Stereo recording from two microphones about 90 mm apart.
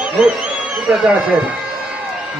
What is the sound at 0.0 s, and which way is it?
A man's voice, 10° right (ahead or behind).